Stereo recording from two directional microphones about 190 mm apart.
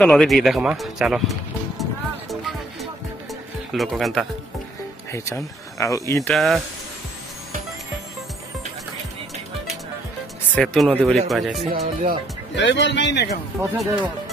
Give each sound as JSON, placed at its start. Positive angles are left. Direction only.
{"t": 0.0, "sound": "speech", "side_deg": 5}
{"t": 1.8, "sound": "music", "side_deg": 0}
{"t": 3.7, "sound": "speech", "side_deg": 0}
{"t": 5.8, "sound": "speech", "side_deg": 15}
{"t": 6.2, "sound": "speech", "side_deg": 0}
{"t": 10.5, "sound": "speech", "side_deg": 0}
{"t": 11.7, "sound": "speech", "side_deg": -50}
{"t": 12.5, "sound": "a man's voice", "side_deg": 70}
{"t": 13.7, "sound": "speech", "side_deg": 0}